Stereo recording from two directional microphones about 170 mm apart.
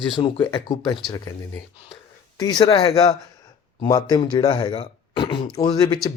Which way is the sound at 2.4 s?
25° left (ahead or behind).